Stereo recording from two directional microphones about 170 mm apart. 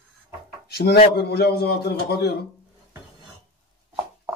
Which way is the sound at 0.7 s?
70° left (ahead or behind).